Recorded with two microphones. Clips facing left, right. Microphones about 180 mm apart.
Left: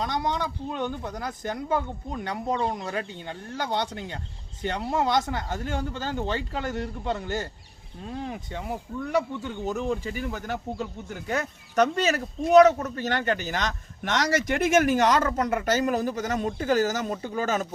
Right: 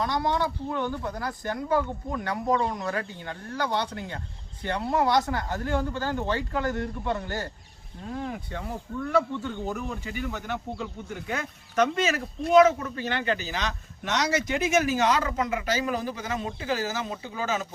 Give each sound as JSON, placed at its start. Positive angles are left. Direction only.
{"t": 0.0, "sound": "speech", "side_deg": 20}
{"t": 10.2, "sound": "a man's voice", "side_deg": 40}